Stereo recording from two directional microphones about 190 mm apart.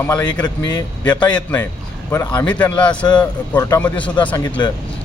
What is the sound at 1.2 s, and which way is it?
A man's voice, 5° left (ahead or behind).